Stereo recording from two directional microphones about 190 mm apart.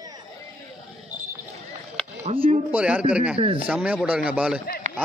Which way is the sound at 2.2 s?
35° right (ahead or behind).